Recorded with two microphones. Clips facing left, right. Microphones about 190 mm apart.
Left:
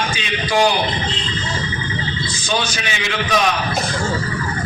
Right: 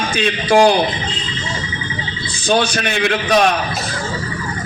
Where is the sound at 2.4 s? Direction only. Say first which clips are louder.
Right 7 dB; 55° right (ahead or behind).